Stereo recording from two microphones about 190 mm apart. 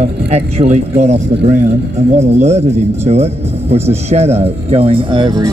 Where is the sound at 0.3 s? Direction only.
35° right (ahead or behind).